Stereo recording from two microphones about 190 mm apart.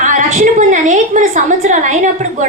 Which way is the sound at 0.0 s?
40° right (ahead or behind).